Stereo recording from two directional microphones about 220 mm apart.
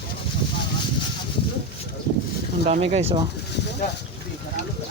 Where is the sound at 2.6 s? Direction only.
30° right (ahead or behind).